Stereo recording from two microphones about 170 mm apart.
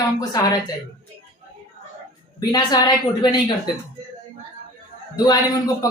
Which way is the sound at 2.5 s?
25° left (ahead or behind).